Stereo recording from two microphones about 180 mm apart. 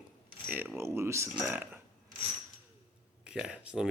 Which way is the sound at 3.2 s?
5° right (ahead or behind).